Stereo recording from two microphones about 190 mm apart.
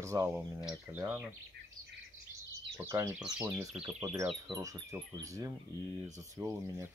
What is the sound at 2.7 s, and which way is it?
Speech, 15° right (ahead or behind).